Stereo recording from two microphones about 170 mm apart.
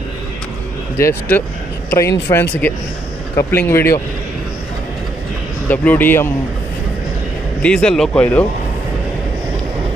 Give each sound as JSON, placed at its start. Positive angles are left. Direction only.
{"t": 0.9, "sound": "speech", "side_deg": 15}
{"t": 5.7, "sound": "speech", "side_deg": 10}
{"t": 7.6, "sound": "speech", "side_deg": 5}